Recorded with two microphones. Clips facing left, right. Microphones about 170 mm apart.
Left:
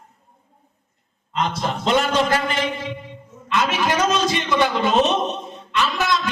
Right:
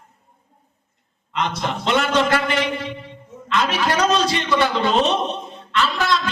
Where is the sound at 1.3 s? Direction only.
40° left (ahead or behind).